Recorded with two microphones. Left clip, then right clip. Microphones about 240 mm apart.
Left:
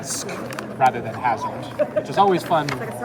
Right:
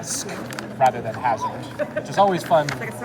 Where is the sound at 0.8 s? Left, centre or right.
Right.